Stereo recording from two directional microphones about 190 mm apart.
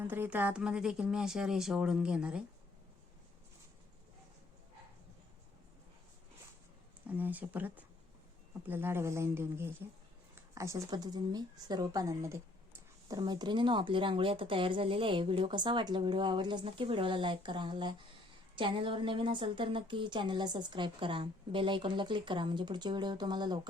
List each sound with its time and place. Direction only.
0.0 s speech: 10° right (ahead or behind)
7.1 s a woman's voice: 10° right (ahead or behind)